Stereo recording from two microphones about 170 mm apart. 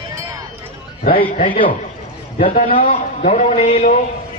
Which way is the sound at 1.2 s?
50° left (ahead or behind).